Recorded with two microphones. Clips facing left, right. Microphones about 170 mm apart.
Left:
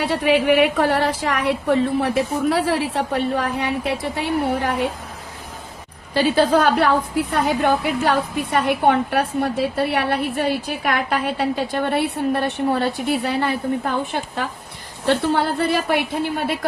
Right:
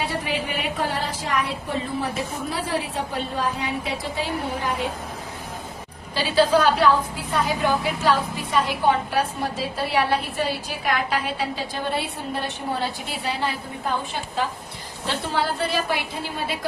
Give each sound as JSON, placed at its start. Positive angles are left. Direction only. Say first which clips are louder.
{"t": 0.0, "sound": "a woman's voice", "louder": "left 9 dB", "side_deg": 70}
{"t": 6.1, "sound": "a woman's voice", "louder": "left 3 dB", "side_deg": 50}
{"t": 15.0, "sound": "a woman's voice", "louder": "left 7 dB", "side_deg": 55}